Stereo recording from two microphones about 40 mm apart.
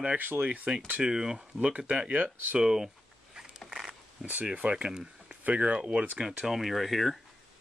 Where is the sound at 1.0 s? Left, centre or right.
Centre.